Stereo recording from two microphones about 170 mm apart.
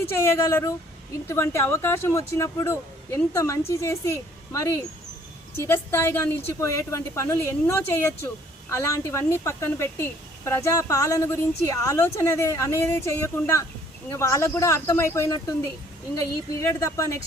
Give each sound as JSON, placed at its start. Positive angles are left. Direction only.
{"t": 0.0, "sound": "a woman's voice", "side_deg": 15}